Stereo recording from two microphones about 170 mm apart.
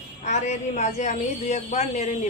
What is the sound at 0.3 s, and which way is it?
A woman's voice, 40° left (ahead or behind).